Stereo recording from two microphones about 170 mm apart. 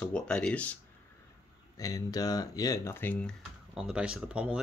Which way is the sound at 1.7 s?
20° left (ahead or behind).